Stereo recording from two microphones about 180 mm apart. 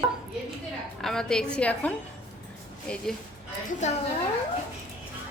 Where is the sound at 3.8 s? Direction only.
40° left (ahead or behind).